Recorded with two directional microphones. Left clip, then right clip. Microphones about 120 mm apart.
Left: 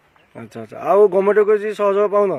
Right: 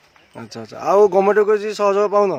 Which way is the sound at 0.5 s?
10° right (ahead or behind).